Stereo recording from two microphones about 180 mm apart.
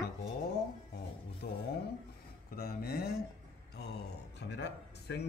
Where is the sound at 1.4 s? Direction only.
60° left (ahead or behind).